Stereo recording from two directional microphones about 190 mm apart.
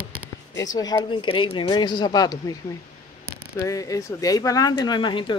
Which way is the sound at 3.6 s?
15° left (ahead or behind).